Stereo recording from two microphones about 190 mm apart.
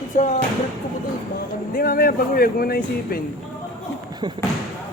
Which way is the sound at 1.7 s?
50° left (ahead or behind).